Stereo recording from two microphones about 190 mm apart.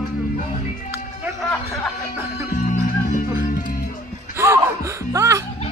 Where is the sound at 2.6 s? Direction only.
45° left (ahead or behind).